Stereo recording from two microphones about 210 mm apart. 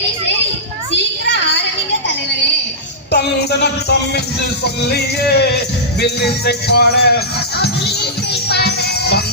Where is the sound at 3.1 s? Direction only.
50° left (ahead or behind).